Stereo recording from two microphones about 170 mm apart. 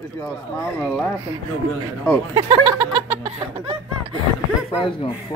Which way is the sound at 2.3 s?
30° right (ahead or behind).